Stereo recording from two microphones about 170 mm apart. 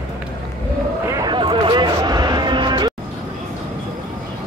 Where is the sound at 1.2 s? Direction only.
30° right (ahead or behind).